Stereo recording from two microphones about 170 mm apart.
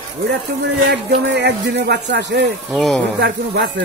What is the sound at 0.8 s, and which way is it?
A man's voice, 90° right.